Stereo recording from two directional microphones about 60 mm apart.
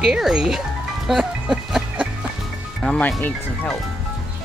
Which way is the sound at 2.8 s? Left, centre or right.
Centre.